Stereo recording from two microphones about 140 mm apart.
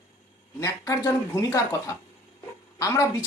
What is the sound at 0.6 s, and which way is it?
A woman's voice, 20° left (ahead or behind).